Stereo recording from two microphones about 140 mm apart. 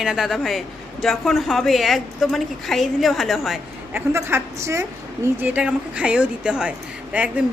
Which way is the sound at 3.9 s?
15° right (ahead or behind).